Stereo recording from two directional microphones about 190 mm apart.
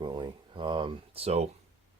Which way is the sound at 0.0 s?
25° right (ahead or behind).